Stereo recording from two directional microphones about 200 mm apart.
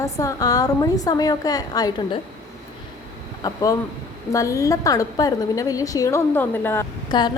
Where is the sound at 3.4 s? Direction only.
15° left (ahead or behind).